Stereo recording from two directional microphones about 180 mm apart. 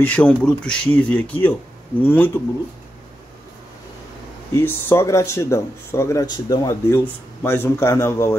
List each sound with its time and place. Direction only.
0.0 s speech: 5° left (ahead or behind)
4.6 s speech: 15° left (ahead or behind)